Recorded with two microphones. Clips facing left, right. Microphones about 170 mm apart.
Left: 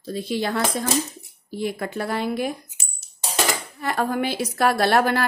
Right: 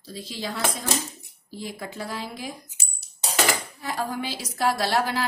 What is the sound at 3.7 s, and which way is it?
A woman's voice, 60° left (ahead or behind).